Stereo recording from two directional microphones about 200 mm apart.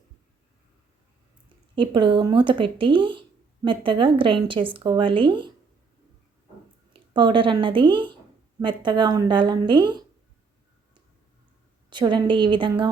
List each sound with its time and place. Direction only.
1.7 s speech: 25° right (ahead or behind)
7.1 s speech: 25° right (ahead or behind)
11.9 s speech: 25° right (ahead or behind)